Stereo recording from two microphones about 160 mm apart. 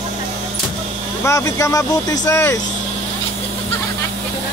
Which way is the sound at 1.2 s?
20° left (ahead or behind).